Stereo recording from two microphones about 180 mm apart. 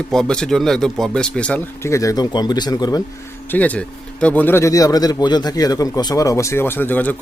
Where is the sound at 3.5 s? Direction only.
10° left (ahead or behind).